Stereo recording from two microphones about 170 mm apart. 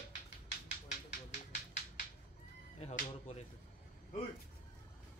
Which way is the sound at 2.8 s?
40° left (ahead or behind).